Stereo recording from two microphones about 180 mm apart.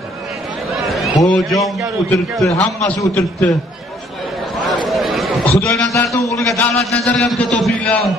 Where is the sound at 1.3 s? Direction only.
Centre (ahead or behind).